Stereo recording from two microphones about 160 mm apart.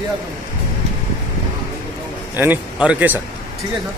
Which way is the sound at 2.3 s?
10° right (ahead or behind).